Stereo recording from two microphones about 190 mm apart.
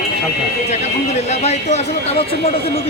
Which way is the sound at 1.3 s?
35° left (ahead or behind).